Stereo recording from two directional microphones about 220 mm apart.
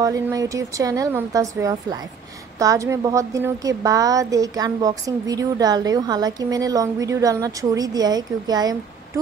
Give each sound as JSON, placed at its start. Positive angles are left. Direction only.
{"t": 0.0, "sound": "a woman's voice", "side_deg": -15}